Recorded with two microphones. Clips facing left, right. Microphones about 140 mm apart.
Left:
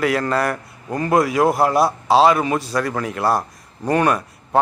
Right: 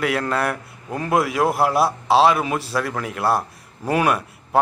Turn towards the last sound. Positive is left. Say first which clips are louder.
# left 1 dB
turn(degrees=-5)  # may be behind; listen again after turning